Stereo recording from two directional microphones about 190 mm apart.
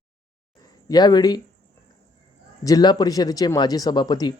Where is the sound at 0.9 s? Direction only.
20° left (ahead or behind).